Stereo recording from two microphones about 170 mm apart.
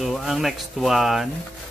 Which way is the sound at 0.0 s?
Centre (ahead or behind).